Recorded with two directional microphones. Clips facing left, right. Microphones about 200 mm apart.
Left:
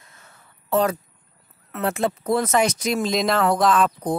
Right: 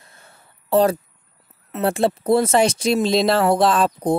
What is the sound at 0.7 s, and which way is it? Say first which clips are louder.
Speech: right 4 dB; 30° right (ahead or behind).